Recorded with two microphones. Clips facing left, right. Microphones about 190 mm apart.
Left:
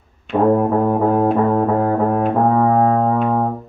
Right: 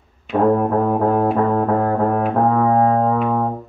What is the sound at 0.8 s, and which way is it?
Music, 5° left (ahead or behind).